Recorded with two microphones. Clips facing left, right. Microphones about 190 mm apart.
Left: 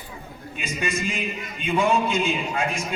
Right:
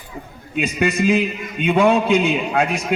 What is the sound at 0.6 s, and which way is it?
A man's voice, 65° right (ahead or behind).